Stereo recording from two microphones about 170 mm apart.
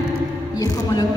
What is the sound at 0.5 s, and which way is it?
Music, 20° left (ahead or behind).